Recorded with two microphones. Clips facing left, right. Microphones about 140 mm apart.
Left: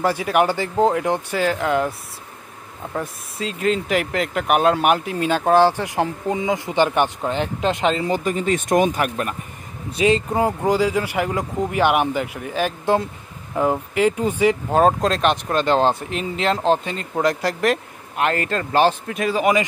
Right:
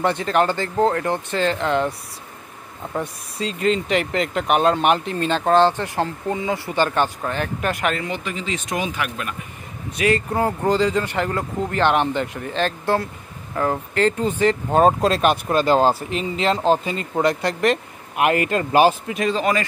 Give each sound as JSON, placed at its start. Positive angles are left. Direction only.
{"t": 0.0, "sound": "speech", "side_deg": 5}
{"t": 8.1, "sound": "speech", "side_deg": 40}
{"t": 9.9, "sound": "speech", "side_deg": 20}
{"t": 18.1, "sound": "a man's voice", "side_deg": -10}
{"t": 19.3, "sound": "speech", "side_deg": 15}